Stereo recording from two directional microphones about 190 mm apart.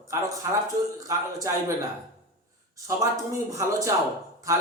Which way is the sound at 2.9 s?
15° right (ahead or behind).